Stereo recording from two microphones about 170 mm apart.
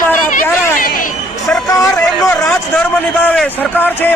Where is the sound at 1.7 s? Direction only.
20° left (ahead or behind).